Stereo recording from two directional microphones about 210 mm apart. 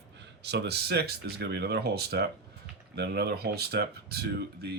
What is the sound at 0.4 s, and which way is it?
Speech, 50° right (ahead or behind).